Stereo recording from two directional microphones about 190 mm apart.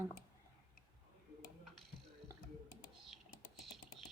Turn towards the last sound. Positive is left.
turn(degrees=0)  # may be behind; listen again after turning